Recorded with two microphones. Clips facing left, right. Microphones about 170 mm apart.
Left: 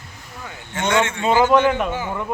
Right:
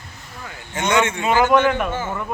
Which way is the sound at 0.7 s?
20° right (ahead or behind).